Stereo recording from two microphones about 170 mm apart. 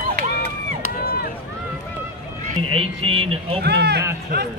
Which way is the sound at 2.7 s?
35° right (ahead or behind).